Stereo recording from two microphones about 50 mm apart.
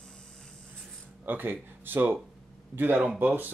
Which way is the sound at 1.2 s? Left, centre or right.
Right.